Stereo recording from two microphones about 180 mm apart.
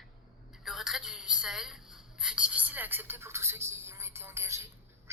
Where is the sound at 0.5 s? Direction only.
Centre (ahead or behind).